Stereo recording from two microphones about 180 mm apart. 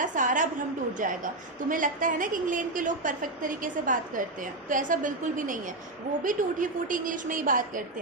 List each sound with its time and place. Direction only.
0.0 s a woman's voice: 45° right (ahead or behind)